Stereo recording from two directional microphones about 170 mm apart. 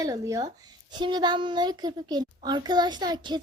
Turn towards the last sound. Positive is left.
turn(degrees=-25)  # may be behind; listen again after turning